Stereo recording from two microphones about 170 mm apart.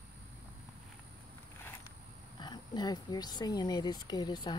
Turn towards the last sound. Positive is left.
turn(degrees=25)  # may be behind; listen again after turning